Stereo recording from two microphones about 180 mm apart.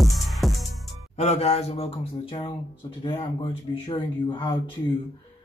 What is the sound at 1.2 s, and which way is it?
Speech, 35° left (ahead or behind).